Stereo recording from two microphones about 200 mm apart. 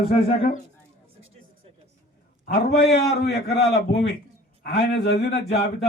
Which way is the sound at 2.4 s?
55° left (ahead or behind).